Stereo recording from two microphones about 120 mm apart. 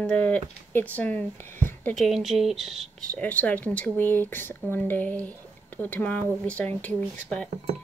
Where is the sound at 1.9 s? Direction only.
Centre (ahead or behind).